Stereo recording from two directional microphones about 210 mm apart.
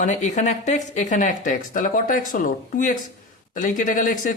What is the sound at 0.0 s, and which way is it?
Speech, 35° left (ahead or behind).